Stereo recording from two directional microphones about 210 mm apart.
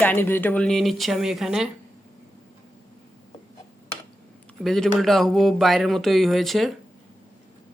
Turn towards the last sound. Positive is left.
turn(degrees=0)  # may be behind; listen again after turning